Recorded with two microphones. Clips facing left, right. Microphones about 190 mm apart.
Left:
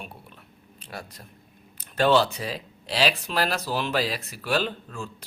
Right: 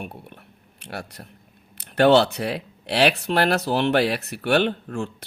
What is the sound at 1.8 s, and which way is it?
Speech, 70° right (ahead or behind).